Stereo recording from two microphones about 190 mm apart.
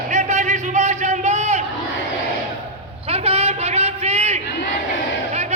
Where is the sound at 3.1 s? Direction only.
30° right (ahead or behind).